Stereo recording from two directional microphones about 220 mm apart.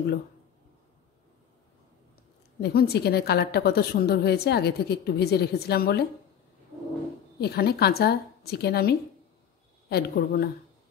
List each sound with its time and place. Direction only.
2.6 s a woman's voice: 45° left (ahead or behind)
7.3 s a woman's voice: 45° left (ahead or behind)